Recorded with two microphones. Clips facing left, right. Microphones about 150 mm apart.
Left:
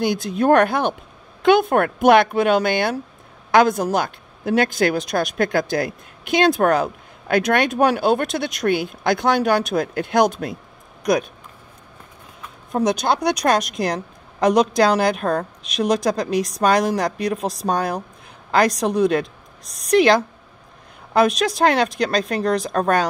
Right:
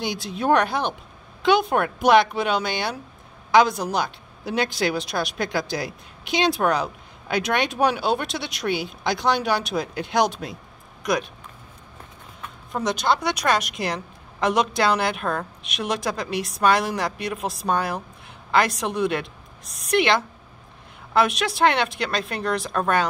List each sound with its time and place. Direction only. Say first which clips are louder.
0.0 s a woman's voice: left 7 dB; 50° left (ahead or behind)
12.7 s a woman's voice: left 4 dB; 45° left (ahead or behind)